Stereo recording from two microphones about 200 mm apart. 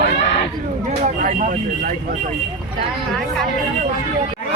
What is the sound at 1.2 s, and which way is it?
Speech, 45° right (ahead or behind).